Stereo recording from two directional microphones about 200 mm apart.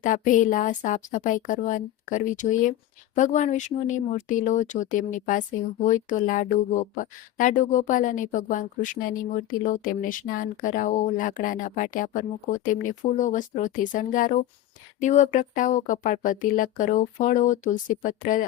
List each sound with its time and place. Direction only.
0.0 s speech: 40° left (ahead or behind)